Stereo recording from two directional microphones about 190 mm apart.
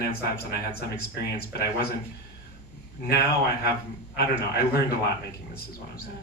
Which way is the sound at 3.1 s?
55° left (ahead or behind).